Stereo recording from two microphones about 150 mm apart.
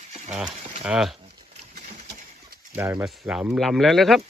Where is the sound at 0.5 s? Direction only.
45° right (ahead or behind).